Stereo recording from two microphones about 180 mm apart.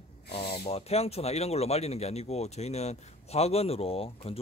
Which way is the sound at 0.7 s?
35° left (ahead or behind).